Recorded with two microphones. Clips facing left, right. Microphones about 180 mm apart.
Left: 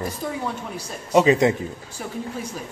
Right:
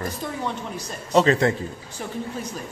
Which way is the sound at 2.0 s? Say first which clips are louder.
Even; 5° left (ahead or behind).